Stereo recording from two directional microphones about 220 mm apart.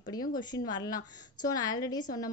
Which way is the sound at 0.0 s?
20° left (ahead or behind).